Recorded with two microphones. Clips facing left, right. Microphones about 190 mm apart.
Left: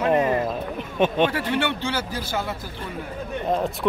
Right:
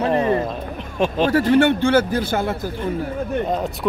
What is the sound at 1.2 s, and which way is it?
Speech, 45° right (ahead or behind).